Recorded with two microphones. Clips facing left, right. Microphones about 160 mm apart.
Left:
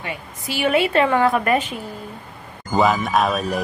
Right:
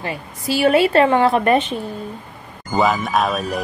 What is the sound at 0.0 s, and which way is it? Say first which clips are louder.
A woman's voice: right 4 dB; 40° right (ahead or behind).